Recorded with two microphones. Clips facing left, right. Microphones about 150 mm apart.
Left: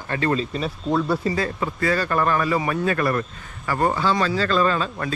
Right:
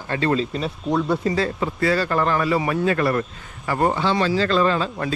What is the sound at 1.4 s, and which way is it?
A man's voice, 30° right (ahead or behind).